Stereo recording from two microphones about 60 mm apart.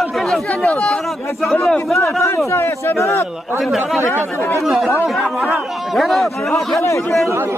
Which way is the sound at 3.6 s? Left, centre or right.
Centre.